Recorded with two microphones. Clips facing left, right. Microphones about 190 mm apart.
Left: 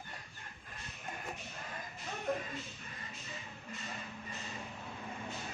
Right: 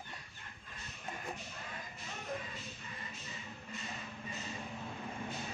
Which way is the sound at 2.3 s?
60° left (ahead or behind).